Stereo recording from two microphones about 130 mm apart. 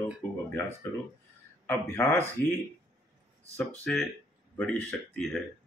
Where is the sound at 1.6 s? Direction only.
20° left (ahead or behind).